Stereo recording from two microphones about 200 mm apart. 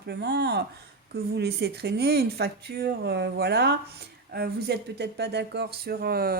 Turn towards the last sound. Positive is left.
turn(degrees=-50)  # may be behind; listen again after turning